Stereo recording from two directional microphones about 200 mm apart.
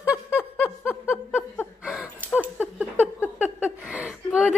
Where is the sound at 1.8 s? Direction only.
5° right (ahead or behind).